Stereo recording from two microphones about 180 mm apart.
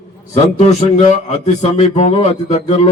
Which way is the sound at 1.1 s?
40° left (ahead or behind).